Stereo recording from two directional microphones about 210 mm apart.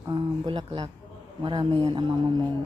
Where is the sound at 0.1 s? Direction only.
20° right (ahead or behind).